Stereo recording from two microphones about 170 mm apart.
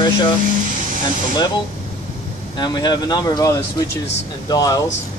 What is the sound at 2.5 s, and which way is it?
Speech, 25° left (ahead or behind).